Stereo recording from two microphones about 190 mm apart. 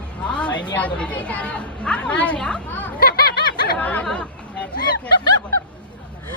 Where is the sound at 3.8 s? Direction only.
5° left (ahead or behind).